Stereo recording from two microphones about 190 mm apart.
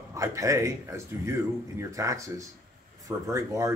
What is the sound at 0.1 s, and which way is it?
Speech, 15° right (ahead or behind).